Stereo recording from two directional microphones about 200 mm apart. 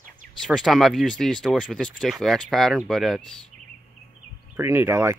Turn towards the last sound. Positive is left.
turn(degrees=-10)  # may be behind; listen again after turning